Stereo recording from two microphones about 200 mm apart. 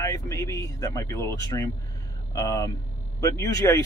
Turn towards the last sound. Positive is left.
turn(degrees=15)  # may be behind; listen again after turning